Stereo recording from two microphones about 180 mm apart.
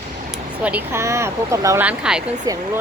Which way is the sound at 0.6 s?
10° right (ahead or behind).